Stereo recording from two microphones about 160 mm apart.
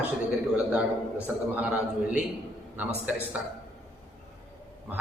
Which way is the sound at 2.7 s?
10° right (ahead or behind).